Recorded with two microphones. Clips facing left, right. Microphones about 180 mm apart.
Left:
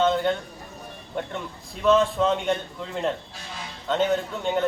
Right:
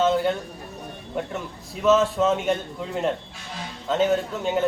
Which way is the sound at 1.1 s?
5° right (ahead or behind).